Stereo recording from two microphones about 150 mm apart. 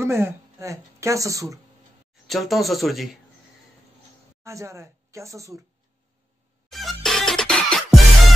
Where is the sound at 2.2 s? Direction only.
Centre (ahead or behind).